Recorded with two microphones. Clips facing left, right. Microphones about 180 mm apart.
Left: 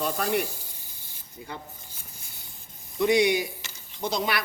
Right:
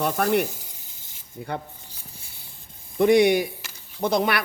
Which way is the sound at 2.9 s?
55° right (ahead or behind).